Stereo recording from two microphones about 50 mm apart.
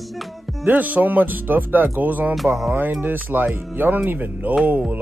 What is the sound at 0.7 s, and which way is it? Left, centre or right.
Speech, right.